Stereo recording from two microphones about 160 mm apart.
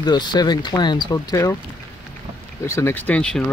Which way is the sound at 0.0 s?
25° left (ahead or behind).